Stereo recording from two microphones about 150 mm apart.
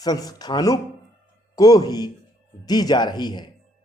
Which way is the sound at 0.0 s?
25° left (ahead or behind).